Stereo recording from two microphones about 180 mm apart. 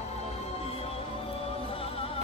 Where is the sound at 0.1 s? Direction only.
35° left (ahead or behind).